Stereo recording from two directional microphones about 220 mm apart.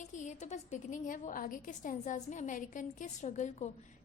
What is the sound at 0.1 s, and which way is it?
A woman's voice, 30° left (ahead or behind).